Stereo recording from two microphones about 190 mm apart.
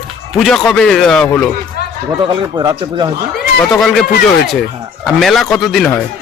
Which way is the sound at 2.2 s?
25° right (ahead or behind).